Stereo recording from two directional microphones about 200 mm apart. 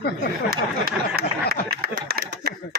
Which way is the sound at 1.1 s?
55° right (ahead or behind).